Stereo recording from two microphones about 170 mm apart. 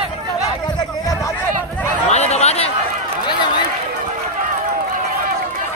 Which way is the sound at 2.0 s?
40° left (ahead or behind).